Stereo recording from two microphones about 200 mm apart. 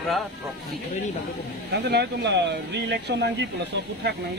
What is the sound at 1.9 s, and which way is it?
Speech, 60° right (ahead or behind).